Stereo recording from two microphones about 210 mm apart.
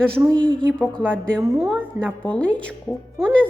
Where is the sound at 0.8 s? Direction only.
5° left (ahead or behind).